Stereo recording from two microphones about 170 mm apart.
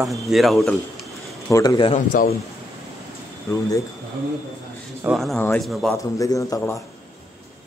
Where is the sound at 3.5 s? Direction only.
20° left (ahead or behind).